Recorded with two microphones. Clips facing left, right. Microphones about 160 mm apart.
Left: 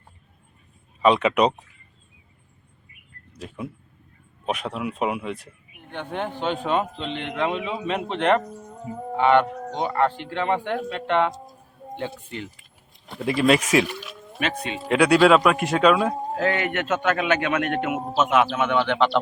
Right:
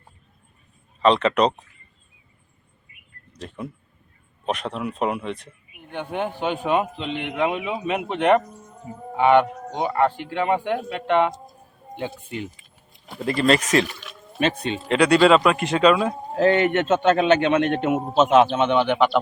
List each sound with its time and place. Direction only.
1.0 s speech: 10° left (ahead or behind)
3.3 s a man's voice: 5° left (ahead or behind)
5.7 s a man's voice: 15° right (ahead or behind)
13.1 s speech: centre (ahead or behind)
14.3 s speech: 30° right (ahead or behind)
14.8 s a man's voice: 5° left (ahead or behind)
16.4 s a man's voice: 30° right (ahead or behind); by 19.2 s 10° right (ahead or behind)